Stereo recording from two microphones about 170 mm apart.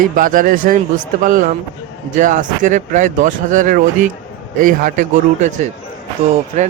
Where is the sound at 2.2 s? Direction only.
45° right (ahead or behind).